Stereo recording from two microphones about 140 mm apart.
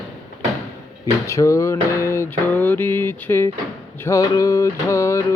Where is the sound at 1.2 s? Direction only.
20° left (ahead or behind).